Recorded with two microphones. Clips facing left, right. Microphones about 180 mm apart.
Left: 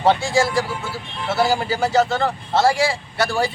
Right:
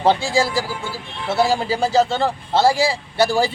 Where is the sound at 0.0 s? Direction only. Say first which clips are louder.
Even; 30° right (ahead or behind).